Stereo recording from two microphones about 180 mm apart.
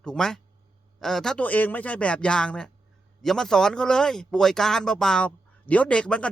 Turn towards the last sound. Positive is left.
turn(degrees=5)  # may be behind; listen again after turning